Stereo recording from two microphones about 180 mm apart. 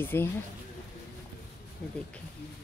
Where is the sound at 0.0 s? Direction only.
10° left (ahead or behind).